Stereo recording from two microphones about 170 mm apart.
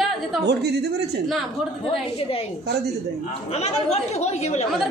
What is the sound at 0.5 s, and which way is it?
Speech, 75° right (ahead or behind).